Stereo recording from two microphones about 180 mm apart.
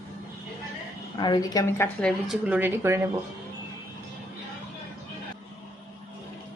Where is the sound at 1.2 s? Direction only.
20° left (ahead or behind).